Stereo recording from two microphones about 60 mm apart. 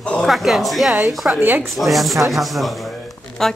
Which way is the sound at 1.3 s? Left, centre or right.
Right.